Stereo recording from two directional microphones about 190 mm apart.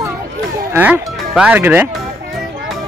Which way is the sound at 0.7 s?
5° right (ahead or behind).